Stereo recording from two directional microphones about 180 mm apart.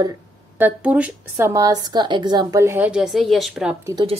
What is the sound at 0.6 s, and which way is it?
A woman's voice, 10° right (ahead or behind).